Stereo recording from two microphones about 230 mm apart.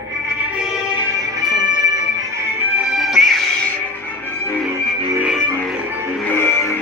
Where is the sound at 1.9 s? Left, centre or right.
Centre.